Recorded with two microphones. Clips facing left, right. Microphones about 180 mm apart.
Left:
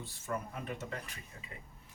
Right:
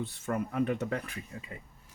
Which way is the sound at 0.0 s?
65° right (ahead or behind).